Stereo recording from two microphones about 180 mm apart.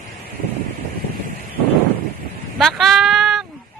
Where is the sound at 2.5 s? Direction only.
Centre (ahead or behind).